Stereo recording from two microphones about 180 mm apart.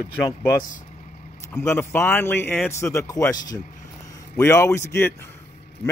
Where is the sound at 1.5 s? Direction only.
15° left (ahead or behind).